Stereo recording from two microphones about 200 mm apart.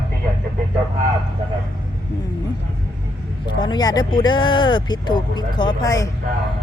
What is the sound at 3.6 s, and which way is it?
Speech, 20° left (ahead or behind).